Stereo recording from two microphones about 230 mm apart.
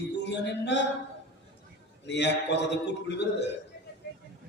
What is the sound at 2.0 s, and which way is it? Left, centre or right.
A man's voice, left.